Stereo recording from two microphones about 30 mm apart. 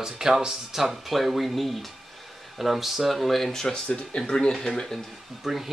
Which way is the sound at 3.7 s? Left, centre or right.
Left.